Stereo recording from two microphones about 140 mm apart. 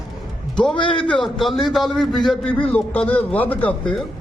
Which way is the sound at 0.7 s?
35° left (ahead or behind).